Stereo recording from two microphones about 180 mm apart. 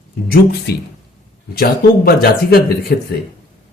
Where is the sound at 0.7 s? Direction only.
65° left (ahead or behind).